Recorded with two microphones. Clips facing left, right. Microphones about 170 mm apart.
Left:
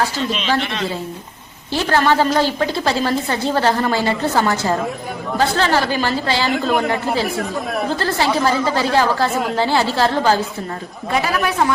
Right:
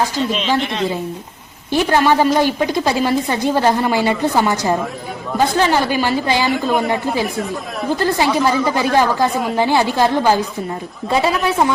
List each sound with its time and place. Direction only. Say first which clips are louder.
0.4 s a woman's voice: right 2 dB; 15° right (ahead or behind)
7.9 s a woman's voice: right 4 dB; 15° right (ahead or behind)
11.1 s a woman's voice: right 3 dB; 25° right (ahead or behind)